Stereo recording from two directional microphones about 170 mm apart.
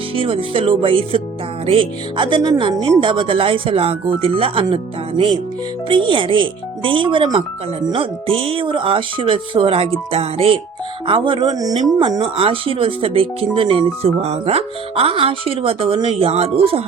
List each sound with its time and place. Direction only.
0.2 s speech: 30° right (ahead or behind)